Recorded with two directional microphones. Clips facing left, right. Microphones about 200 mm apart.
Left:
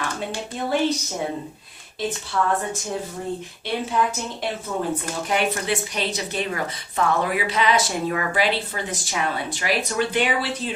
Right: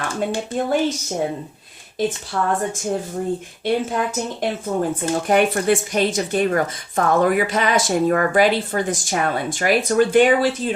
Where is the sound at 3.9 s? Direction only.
45° right (ahead or behind).